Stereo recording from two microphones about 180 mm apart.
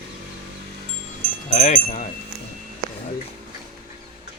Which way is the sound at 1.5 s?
35° left (ahead or behind).